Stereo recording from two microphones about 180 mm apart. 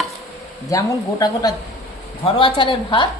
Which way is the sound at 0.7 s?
20° left (ahead or behind).